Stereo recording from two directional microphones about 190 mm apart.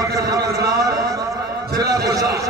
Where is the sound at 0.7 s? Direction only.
20° right (ahead or behind).